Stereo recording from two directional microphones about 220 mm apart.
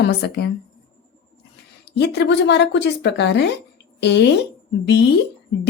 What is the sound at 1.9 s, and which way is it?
A woman's voice, 50° left (ahead or behind).